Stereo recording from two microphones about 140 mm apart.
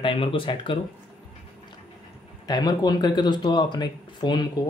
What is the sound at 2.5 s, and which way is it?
Speech, 30° left (ahead or behind).